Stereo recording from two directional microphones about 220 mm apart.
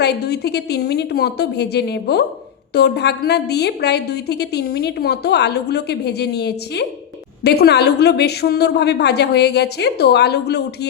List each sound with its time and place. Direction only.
0.0 s a woman's voice: 50° left (ahead or behind)